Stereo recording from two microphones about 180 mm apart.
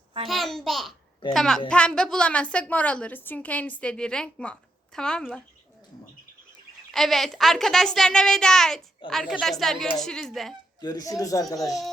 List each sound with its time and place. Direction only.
0.3 s a woman's voice: centre (ahead or behind)
6.9 s a woman's voice: centre (ahead or behind)
10.8 s speech: 20° left (ahead or behind)